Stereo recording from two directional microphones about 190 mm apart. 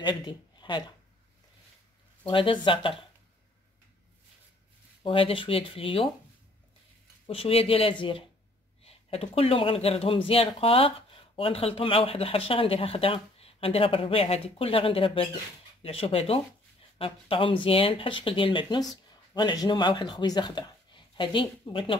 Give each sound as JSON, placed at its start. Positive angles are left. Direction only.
{"t": 0.0, "sound": "speech", "side_deg": 25}
{"t": 2.2, "sound": "speech", "side_deg": 25}
{"t": 5.0, "sound": "speech", "side_deg": 30}
{"t": 7.2, "sound": "speech", "side_deg": 30}